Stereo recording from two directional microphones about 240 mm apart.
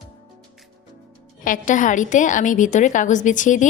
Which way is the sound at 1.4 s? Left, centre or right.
Left.